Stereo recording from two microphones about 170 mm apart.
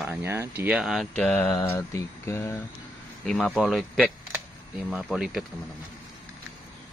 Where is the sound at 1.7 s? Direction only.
15° left (ahead or behind).